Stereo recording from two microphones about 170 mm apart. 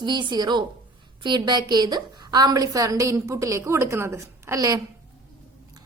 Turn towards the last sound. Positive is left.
turn(degrees=-20)  # may be behind; listen again after turning